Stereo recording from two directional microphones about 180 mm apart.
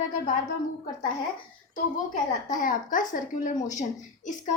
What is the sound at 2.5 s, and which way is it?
A woman's voice, 45° left (ahead or behind).